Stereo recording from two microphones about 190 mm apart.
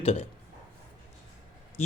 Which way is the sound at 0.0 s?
35° left (ahead or behind).